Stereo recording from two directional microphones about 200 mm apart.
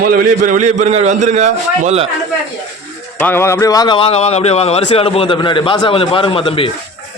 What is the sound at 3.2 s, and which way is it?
Speech, 10° left (ahead or behind).